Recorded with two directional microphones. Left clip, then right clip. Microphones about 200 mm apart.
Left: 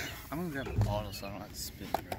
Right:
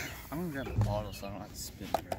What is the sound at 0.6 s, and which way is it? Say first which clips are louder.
Speech: even; 30° right (ahead or behind).